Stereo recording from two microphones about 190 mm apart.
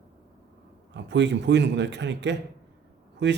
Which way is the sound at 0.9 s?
65° right (ahead or behind).